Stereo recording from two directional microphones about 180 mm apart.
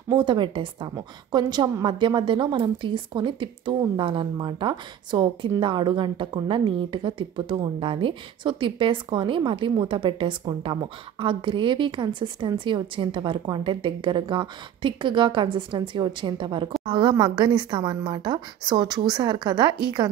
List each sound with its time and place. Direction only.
0.1 s a woman's voice: 25° right (ahead or behind)